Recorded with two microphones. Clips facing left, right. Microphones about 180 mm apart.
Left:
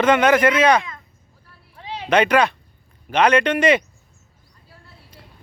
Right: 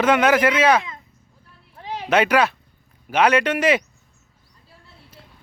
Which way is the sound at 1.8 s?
45° right (ahead or behind).